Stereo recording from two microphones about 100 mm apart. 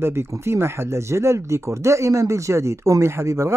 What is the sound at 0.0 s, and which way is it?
Speech, 25° right (ahead or behind).